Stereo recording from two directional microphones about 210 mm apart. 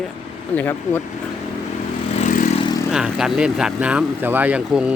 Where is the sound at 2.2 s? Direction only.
35° left (ahead or behind).